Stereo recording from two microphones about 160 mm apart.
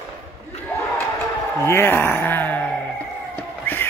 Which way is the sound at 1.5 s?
15° left (ahead or behind).